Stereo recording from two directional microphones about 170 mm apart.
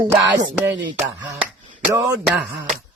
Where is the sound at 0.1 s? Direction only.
15° right (ahead or behind).